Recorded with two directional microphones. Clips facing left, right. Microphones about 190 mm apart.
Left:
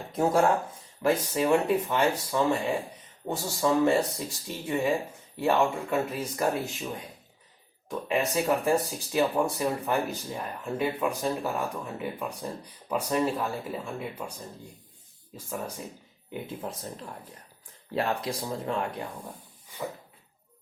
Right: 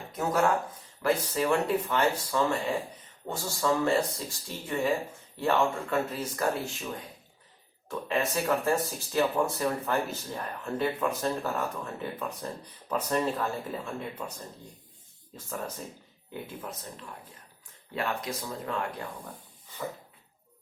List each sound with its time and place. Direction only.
0.1 s speech: 30° left (ahead or behind)
1.0 s speech: 15° left (ahead or behind)
7.9 s speech: 15° left (ahead or behind)
16.6 s speech: 30° left (ahead or behind)